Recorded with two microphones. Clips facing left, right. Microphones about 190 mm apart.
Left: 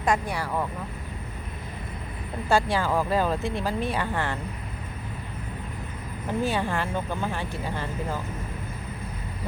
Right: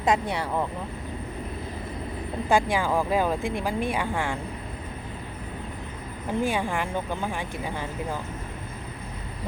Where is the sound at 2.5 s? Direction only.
15° right (ahead or behind).